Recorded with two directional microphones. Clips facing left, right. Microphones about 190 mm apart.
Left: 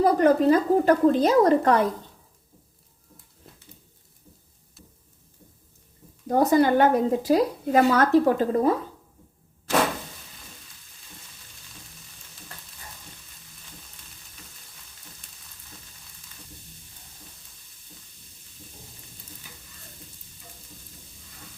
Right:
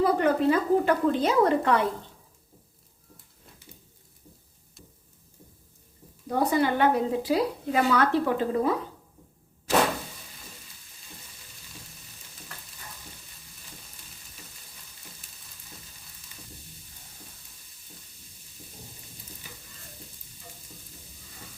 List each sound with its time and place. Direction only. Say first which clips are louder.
0.0 s a woman's voice: left 4 dB; 40° left (ahead or behind)
6.2 s a woman's voice: left 5 dB; 45° left (ahead or behind)